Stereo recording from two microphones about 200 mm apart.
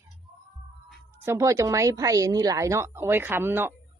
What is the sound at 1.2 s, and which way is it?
A woman's voice, 15° right (ahead or behind).